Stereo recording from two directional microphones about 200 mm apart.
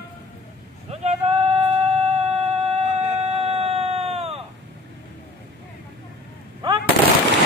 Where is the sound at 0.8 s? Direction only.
30° right (ahead or behind).